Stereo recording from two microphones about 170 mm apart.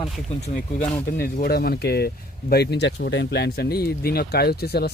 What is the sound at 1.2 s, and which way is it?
Speech, 65° left (ahead or behind).